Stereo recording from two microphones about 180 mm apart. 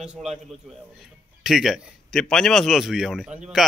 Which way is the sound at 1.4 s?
Centre (ahead or behind).